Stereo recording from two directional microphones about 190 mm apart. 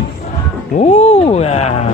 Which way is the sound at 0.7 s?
35° left (ahead or behind).